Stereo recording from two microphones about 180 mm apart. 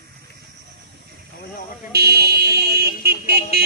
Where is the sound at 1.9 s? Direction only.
65° right (ahead or behind).